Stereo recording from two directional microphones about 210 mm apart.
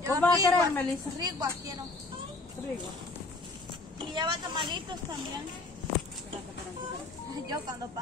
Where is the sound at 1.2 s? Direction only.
20° right (ahead or behind).